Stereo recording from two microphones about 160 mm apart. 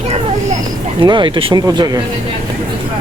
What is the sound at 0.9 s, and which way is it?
Speech, 30° right (ahead or behind).